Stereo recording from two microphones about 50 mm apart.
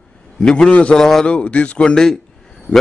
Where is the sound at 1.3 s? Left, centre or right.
Left.